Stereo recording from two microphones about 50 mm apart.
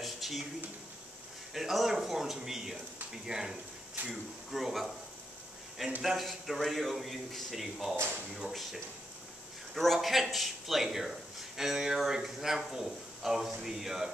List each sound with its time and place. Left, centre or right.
0.0 s a sound: centre
1.5 s a man's voice: centre
6.0 s a man's voice: centre
9.9 s a man's voice: centre